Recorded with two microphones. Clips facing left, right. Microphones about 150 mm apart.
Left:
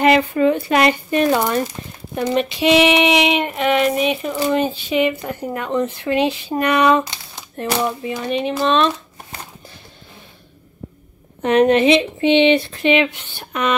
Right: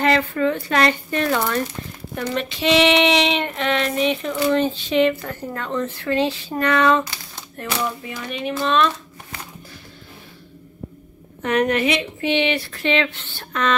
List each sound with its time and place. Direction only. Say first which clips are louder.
0.0 s speech: left 4 dB; 15° left (ahead or behind)
11.4 s speech: left 6 dB; 25° left (ahead or behind)